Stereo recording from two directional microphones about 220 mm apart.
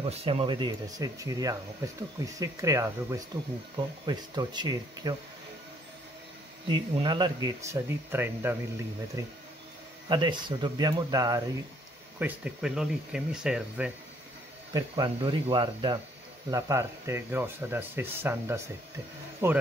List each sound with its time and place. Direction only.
0.0 s speech: 25° right (ahead or behind)
6.7 s speech: 20° right (ahead or behind); by 13.9 s 5° right (ahead or behind)
14.7 s speech: 20° right (ahead or behind)